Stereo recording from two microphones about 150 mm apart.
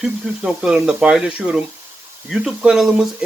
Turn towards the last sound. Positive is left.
turn(degrees=-5)  # may be behind; listen again after turning